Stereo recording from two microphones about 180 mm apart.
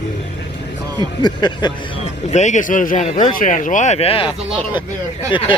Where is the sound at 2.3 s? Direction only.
40° left (ahead or behind).